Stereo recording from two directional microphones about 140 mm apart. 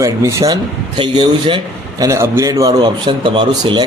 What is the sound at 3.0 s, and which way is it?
Speech, 35° right (ahead or behind).